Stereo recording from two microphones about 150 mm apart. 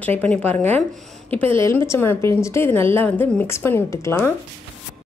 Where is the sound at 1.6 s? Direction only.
20° left (ahead or behind).